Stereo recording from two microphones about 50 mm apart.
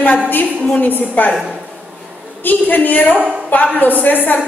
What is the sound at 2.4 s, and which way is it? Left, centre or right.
A woman's voice, left.